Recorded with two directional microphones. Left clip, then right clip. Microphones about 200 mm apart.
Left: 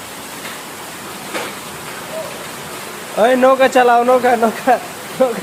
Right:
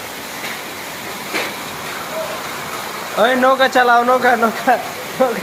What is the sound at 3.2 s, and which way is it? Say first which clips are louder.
Speech: left 2 dB; 25° left (ahead or behind).